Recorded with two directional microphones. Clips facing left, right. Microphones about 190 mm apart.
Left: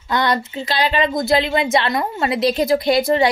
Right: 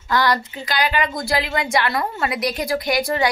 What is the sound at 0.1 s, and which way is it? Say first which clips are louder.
A woman's voice: left 1 dB; 20° left (ahead or behind).